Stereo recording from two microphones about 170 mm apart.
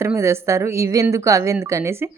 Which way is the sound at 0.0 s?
15° right (ahead or behind).